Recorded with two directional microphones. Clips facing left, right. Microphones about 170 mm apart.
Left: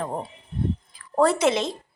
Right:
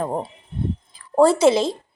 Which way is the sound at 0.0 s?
35° right (ahead or behind).